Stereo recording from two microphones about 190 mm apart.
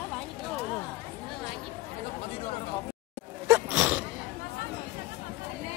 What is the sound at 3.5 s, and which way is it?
Sneeze, 10° right (ahead or behind).